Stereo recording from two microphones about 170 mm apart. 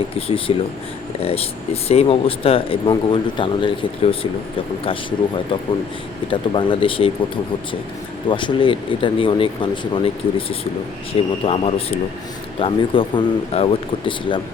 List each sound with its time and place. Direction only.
0.3 s speech: 30° left (ahead or behind)
6.3 s speech: 30° left (ahead or behind)
8.3 s speech: 30° left (ahead or behind)